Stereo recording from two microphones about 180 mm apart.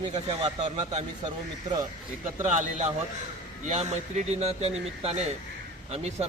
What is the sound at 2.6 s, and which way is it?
Speech, 40° right (ahead or behind).